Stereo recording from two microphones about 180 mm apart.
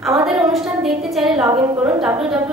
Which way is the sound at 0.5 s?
Centre (ahead or behind).